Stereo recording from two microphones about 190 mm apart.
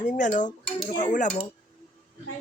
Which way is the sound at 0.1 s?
40° left (ahead or behind).